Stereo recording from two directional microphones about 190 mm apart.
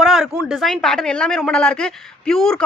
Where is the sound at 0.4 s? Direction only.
Centre (ahead or behind).